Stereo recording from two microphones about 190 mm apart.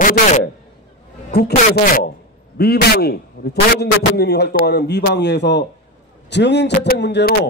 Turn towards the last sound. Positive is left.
turn(degrees=65)  # may be behind; listen again after turning